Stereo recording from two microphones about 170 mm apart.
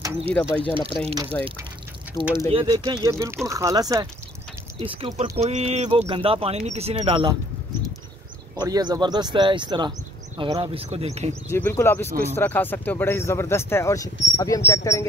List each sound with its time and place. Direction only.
0.3 s speech: 10° left (ahead or behind)
2.1 s speech: 35° left (ahead or behind)
2.5 s speech: 25° right (ahead or behind)
4.7 s speech: 35° right (ahead or behind)
8.5 s speech: 25° right (ahead or behind); by 11.5 s 40° right (ahead or behind)
11.5 s speech: 15° left (ahead or behind)